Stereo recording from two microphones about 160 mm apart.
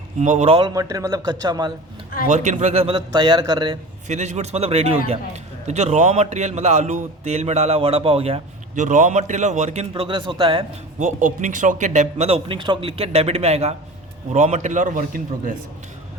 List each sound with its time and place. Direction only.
0.2 s a man's voice: 45° right (ahead or behind)
0.7 s speech: 20° right (ahead or behind)
2.2 s speech: 50° right (ahead or behind); by 3.8 s 30° right (ahead or behind)
4.1 s a man's voice: 45° right (ahead or behind)
8.7 s a man's voice: 50° right (ahead or behind)
9.9 s speech: 30° right (ahead or behind)
11.0 s a man's voice: 55° right (ahead or behind)